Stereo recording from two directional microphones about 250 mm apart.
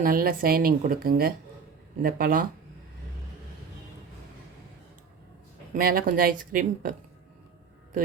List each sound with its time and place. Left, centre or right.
0.0 s a woman's voice: right
5.7 s a woman's voice: right